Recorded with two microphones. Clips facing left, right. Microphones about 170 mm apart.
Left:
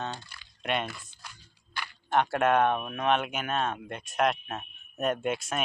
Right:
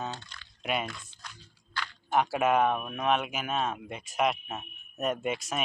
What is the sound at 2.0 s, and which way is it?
Speech, 5° right (ahead or behind).